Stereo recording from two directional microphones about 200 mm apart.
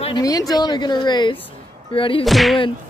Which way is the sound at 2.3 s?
Centre (ahead or behind).